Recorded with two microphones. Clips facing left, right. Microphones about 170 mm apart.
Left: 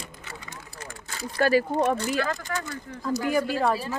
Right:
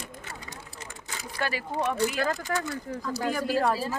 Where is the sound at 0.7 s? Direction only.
20° right (ahead or behind).